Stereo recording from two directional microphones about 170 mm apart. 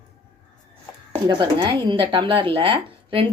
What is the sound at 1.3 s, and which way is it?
Speech, 25° right (ahead or behind).